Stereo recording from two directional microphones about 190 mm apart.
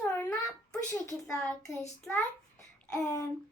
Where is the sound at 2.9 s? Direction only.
20° left (ahead or behind).